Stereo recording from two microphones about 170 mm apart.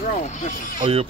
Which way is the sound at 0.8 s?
35° right (ahead or behind).